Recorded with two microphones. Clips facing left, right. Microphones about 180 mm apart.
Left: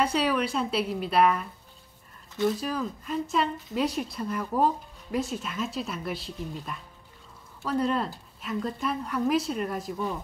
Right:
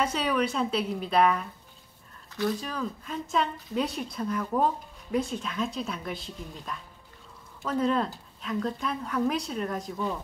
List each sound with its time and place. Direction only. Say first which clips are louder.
0.0 s a woman's voice: left 1 dB; centre (ahead or behind)
2.6 s a woman's voice: left 3 dB; 5° left (ahead or behind)